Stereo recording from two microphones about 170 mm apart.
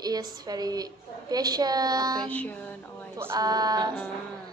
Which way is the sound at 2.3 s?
10° left (ahead or behind).